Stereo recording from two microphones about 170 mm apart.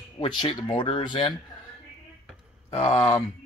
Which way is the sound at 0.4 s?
25° left (ahead or behind).